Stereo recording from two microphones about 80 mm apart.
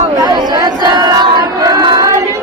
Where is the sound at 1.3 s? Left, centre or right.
Right.